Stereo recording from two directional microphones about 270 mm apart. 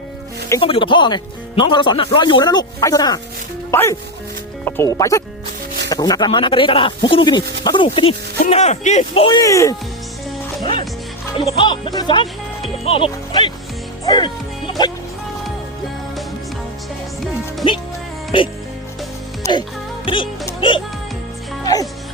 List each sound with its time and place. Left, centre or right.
0.4 s speech: centre
10.6 s music: centre
11.3 s speech: centre
18.3 s speech: centre
19.4 s music: centre
20.1 s speech: centre
21.6 s music: centre